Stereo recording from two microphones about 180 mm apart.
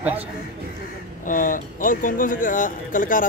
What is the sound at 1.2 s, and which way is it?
Speech, 50° left (ahead or behind).